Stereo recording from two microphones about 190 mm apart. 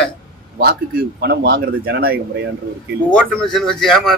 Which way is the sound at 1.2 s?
55° right (ahead or behind).